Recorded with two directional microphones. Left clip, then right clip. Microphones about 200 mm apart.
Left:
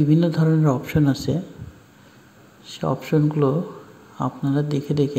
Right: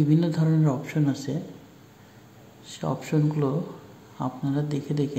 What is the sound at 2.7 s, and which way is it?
Speech, 15° left (ahead or behind).